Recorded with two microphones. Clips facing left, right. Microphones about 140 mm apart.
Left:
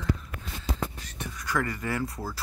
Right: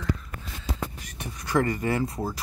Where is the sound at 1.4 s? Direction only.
25° right (ahead or behind).